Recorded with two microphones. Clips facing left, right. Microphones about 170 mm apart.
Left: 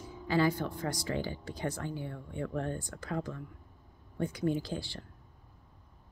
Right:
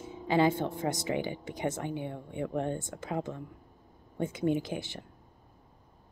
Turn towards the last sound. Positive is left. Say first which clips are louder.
# right 3 dB
turn(degrees=-20)  # may be behind; listen again after turning